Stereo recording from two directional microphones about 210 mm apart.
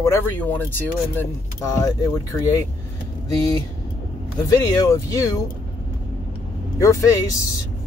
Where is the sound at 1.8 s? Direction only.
15° left (ahead or behind).